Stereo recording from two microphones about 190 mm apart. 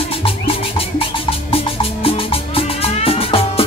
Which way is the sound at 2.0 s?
30° left (ahead or behind).